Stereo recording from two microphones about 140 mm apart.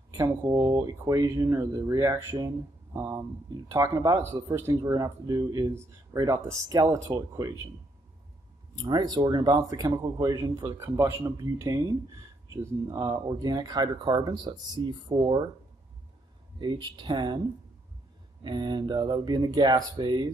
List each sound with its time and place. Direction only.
0.1 s speech: 20° right (ahead or behind)
8.7 s speech: 30° right (ahead or behind)
16.5 s speech: 35° right (ahead or behind)
18.4 s speech: 30° right (ahead or behind)